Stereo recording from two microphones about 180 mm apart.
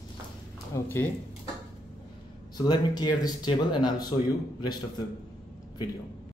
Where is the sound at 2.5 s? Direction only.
25° left (ahead or behind).